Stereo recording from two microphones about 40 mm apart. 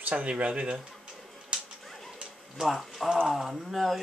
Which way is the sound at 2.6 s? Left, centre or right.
Centre.